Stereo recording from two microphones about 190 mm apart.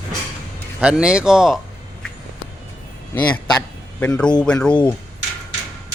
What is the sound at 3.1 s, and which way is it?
A man's voice, 10° left (ahead or behind).